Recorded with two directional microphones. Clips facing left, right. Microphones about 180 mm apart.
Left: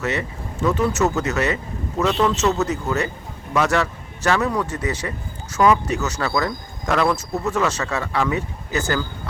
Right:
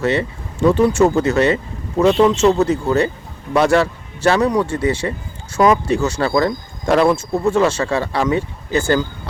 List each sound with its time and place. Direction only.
0.0 s a man's voice: 30° right (ahead or behind)